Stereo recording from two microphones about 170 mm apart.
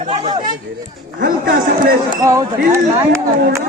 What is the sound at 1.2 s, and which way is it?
Speech, 65° right (ahead or behind).